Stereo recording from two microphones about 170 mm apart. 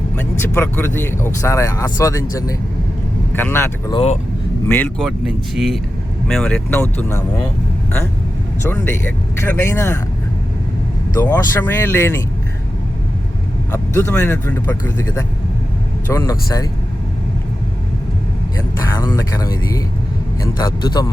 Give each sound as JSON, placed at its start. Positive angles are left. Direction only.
{"t": 0.2, "sound": "speech", "side_deg": 10}
{"t": 3.3, "sound": "speech", "side_deg": 10}
{"t": 3.9, "sound": "speech", "side_deg": 40}
{"t": 4.6, "sound": "speech", "side_deg": 10}
{"t": 5.5, "sound": "speech", "side_deg": 0}
{"t": 8.6, "sound": "speech", "side_deg": 15}
{"t": 11.1, "sound": "speech", "side_deg": 20}
{"t": 13.7, "sound": "speech", "side_deg": 15}
{"t": 18.8, "sound": "speech", "side_deg": 20}